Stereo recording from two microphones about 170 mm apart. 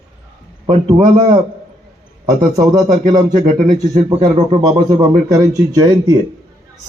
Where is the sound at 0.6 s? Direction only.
30° right (ahead or behind).